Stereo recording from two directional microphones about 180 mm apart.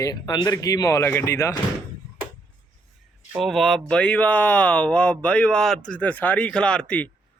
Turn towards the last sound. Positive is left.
turn(degrees=5)  # may be behind; listen again after turning